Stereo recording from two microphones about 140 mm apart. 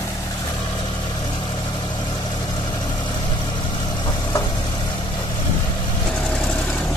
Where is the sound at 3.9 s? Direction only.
30° left (ahead or behind).